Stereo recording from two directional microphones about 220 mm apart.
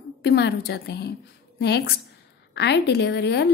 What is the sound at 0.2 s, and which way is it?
A woman's voice, 50° left (ahead or behind).